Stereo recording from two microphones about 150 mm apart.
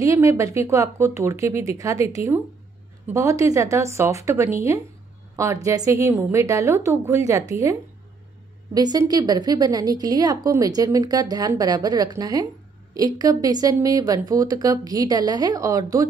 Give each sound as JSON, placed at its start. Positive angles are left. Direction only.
{"t": 0.0, "sound": "a woman's voice", "side_deg": -20}
{"t": 8.7, "sound": "a woman's voice", "side_deg": -25}